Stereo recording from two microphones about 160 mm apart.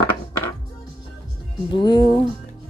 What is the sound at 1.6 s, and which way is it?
Speech, 30° left (ahead or behind).